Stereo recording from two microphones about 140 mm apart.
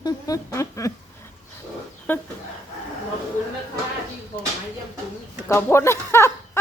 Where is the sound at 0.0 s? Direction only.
25° left (ahead or behind).